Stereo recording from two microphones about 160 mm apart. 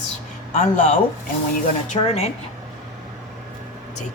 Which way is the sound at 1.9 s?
45° left (ahead or behind).